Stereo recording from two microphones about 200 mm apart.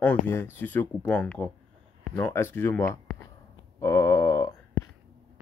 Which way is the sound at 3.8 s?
15° left (ahead or behind).